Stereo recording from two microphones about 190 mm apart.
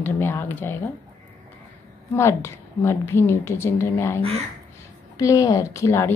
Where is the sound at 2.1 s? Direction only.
15° left (ahead or behind).